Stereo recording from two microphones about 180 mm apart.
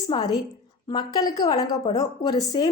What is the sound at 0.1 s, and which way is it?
Speech, 25° left (ahead or behind).